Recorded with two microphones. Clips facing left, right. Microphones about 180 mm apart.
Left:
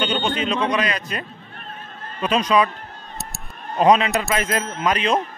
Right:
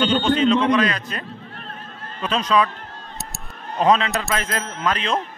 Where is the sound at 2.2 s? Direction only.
15° left (ahead or behind).